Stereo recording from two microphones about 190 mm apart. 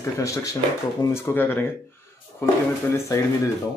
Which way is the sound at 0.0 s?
15° left (ahead or behind).